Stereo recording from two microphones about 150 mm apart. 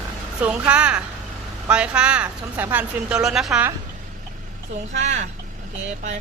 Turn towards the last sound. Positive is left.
turn(degrees=-50)  # may be behind; listen again after turning